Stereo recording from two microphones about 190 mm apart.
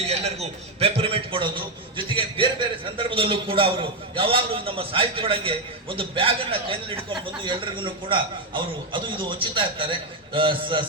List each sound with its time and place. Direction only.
0.1 s a man's voice: 35° right (ahead or behind)